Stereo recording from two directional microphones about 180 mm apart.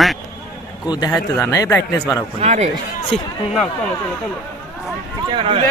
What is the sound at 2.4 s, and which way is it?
Speech, 35° right (ahead or behind).